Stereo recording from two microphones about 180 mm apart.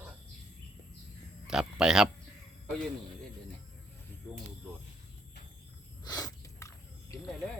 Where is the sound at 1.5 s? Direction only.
5° right (ahead or behind).